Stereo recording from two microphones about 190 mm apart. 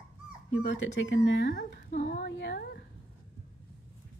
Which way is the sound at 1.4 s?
50° left (ahead or behind).